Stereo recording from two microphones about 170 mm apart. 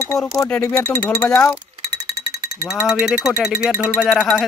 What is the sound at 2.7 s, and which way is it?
Speech, 5° right (ahead or behind).